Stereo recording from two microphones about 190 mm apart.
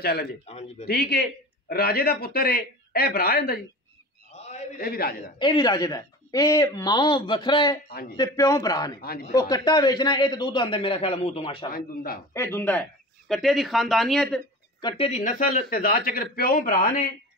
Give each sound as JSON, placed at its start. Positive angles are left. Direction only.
{"t": 0.0, "sound": "a man's voice", "side_deg": 55}
{"t": 0.5, "sound": "a man's voice", "side_deg": 35}
{"t": 0.8, "sound": "a man's voice", "side_deg": 55}
{"t": 4.3, "sound": "a sound", "side_deg": 35}
{"t": 4.7, "sound": "speech", "side_deg": 50}
{"t": 5.4, "sound": "speech", "side_deg": 20}
{"t": 11.7, "sound": "speech", "side_deg": 50}
{"t": 12.4, "sound": "speech", "side_deg": 15}
{"t": 14.8, "sound": "speech", "side_deg": 25}
{"t": 15.0, "sound": "speech", "side_deg": 40}